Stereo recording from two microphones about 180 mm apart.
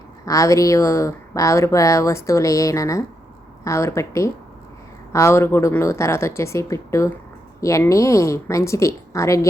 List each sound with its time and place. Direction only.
0.3 s speech: 20° left (ahead or behind)